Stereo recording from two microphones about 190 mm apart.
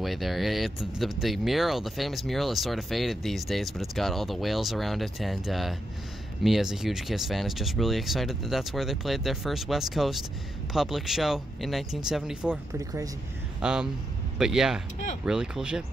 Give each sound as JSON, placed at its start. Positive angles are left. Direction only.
{"t": 0.0, "sound": "speech", "side_deg": 0}
{"t": 12.7, "sound": "speech", "side_deg": -15}
{"t": 13.6, "sound": "speech", "side_deg": -5}